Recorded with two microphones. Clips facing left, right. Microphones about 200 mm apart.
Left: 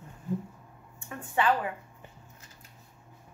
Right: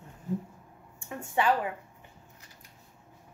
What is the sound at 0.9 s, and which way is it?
Speech, 15° right (ahead or behind).